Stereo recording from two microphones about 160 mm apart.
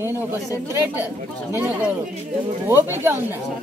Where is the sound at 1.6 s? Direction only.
10° right (ahead or behind).